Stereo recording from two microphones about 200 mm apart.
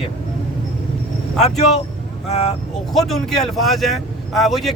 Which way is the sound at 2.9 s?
Centre (ahead or behind).